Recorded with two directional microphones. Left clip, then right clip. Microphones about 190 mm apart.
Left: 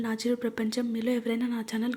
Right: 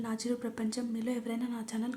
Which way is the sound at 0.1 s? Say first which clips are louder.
Left 7 dB; 15° left (ahead or behind).